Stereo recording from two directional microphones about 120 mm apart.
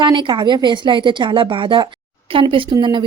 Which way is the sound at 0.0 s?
40° right (ahead or behind).